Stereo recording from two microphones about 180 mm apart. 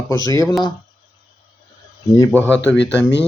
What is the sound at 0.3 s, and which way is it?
Speech, 20° left (ahead or behind).